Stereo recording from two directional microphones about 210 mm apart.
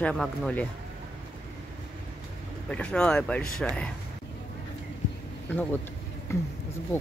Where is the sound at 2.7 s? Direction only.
5° left (ahead or behind).